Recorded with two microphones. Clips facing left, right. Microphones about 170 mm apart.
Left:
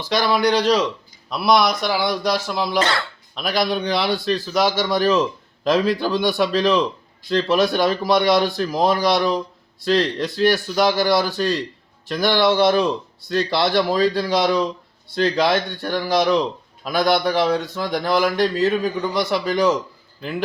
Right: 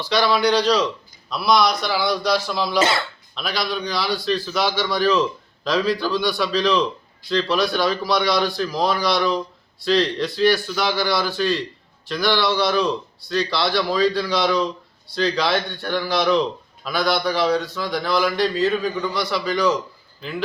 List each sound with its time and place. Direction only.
0.0 s a man's voice: 45° left (ahead or behind)